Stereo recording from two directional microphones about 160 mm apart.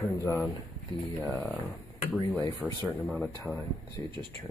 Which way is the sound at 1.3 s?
10° left (ahead or behind).